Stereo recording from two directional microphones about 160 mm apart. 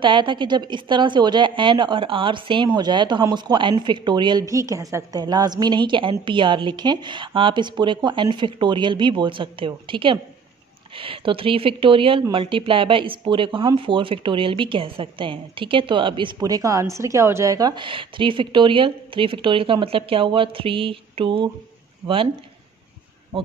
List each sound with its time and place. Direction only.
0.0 s a woman's voice: 30° right (ahead or behind)